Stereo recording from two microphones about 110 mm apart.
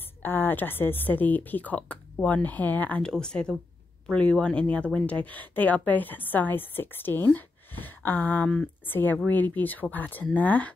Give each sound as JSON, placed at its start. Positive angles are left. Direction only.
{"t": 0.2, "sound": "speech", "side_deg": 20}